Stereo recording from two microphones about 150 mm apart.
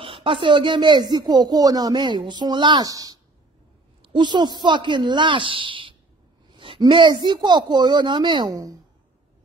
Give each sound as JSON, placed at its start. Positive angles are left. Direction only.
{"t": 0.0, "sound": "a woman's voice", "side_deg": -35}